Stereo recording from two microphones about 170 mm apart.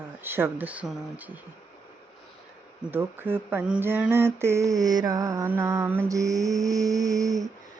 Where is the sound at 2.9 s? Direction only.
10° right (ahead or behind).